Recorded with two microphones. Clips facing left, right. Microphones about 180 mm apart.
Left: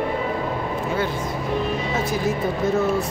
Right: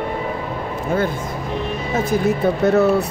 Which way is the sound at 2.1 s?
65° right (ahead or behind).